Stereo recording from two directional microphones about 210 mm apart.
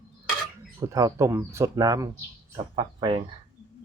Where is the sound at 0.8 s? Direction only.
15° right (ahead or behind).